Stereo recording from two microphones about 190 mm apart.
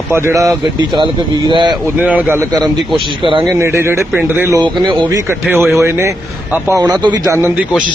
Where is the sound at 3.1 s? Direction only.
25° right (ahead or behind).